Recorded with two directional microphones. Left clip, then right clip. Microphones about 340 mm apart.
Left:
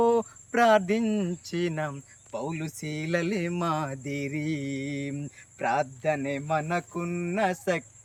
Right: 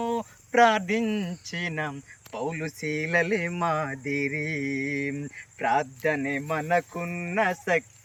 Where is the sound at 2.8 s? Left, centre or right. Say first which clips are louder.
Right 5 dB; centre.